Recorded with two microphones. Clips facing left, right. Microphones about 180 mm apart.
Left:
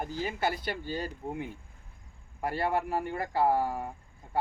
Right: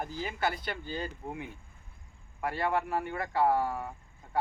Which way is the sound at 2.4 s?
35° left (ahead or behind).